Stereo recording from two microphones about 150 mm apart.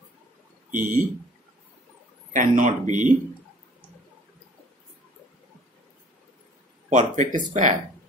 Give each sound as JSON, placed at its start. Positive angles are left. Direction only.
{"t": 0.7, "sound": "speech", "side_deg": -60}
{"t": 2.3, "sound": "speech", "side_deg": -60}
{"t": 6.9, "sound": "speech", "side_deg": -55}